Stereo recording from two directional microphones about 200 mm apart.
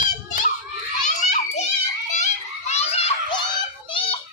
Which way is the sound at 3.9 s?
25° left (ahead or behind).